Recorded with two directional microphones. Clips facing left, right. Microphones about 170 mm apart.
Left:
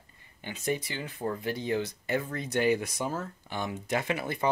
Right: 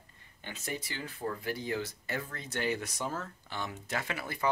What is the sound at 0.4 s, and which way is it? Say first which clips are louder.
Speech: left 8 dB; 15° left (ahead or behind).